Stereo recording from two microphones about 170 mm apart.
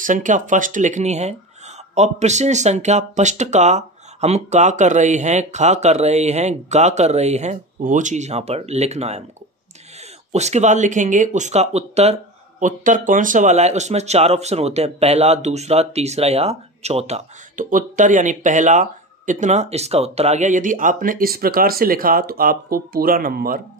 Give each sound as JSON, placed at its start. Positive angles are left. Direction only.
{"t": 0.0, "sound": "speech", "side_deg": -50}
{"t": 10.3, "sound": "speech", "side_deg": -40}